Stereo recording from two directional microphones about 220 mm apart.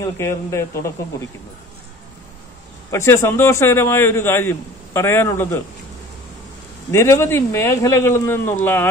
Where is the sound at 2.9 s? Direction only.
10° left (ahead or behind).